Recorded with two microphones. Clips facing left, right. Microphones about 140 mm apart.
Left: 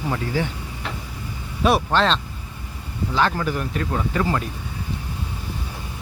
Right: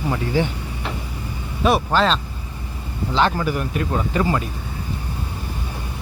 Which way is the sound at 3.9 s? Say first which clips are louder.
Right 2 dB; 20° right (ahead or behind).